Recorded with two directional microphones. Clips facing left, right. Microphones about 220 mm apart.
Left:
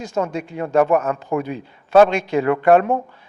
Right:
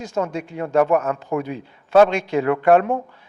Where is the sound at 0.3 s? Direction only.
15° left (ahead or behind).